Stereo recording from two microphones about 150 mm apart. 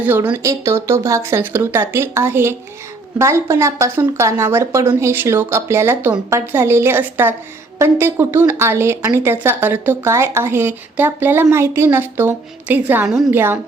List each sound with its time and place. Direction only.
0.0 s a woman's voice: 10° right (ahead or behind)
13.1 s a woman's voice: centre (ahead or behind)
13.3 s a woman's voice: 15° right (ahead or behind)